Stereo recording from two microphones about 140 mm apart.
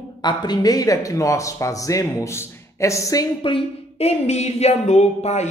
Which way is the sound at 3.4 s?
40° left (ahead or behind).